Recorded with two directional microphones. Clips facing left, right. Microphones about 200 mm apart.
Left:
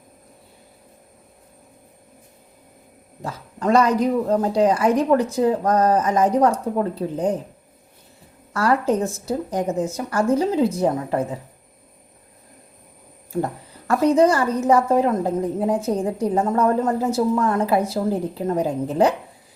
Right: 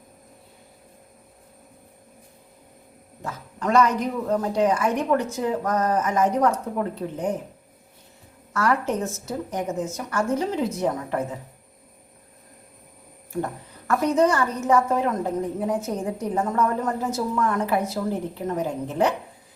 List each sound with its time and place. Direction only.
3.2 s a woman's voice: 35° left (ahead or behind)
8.5 s a woman's voice: 30° left (ahead or behind)
13.8 s a woman's voice: 30° left (ahead or behind)